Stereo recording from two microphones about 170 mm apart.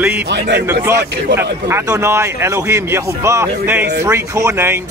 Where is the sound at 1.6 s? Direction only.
20° right (ahead or behind).